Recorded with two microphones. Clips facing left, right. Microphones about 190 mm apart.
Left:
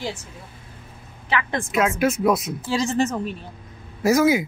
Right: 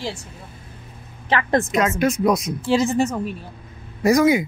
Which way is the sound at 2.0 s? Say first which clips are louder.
Right 1 dB; 5° left (ahead or behind).